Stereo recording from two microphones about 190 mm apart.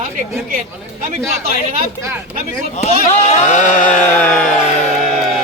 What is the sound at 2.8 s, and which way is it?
Speech, 35° left (ahead or behind).